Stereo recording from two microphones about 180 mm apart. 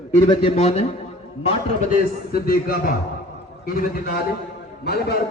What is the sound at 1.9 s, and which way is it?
A man's voice, 55° left (ahead or behind).